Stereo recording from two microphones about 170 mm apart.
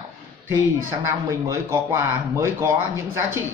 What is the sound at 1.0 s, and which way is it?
Speech, 15° right (ahead or behind).